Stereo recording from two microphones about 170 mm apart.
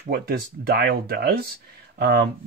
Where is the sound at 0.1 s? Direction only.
70° right (ahead or behind).